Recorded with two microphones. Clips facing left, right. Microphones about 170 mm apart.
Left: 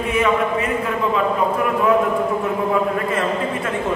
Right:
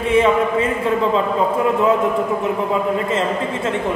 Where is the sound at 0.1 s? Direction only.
30° right (ahead or behind).